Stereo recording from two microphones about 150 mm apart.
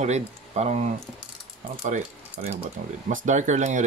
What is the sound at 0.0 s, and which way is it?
Speech, 50° right (ahead or behind).